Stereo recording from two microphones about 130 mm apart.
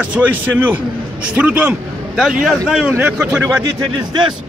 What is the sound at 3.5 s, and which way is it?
Speech, 30° right (ahead or behind).